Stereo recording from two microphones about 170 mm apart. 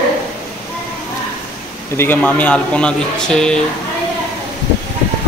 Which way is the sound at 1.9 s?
10° left (ahead or behind).